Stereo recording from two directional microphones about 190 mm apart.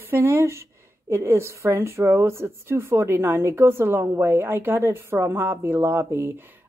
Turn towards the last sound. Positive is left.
turn(degrees=-10)  # may be behind; listen again after turning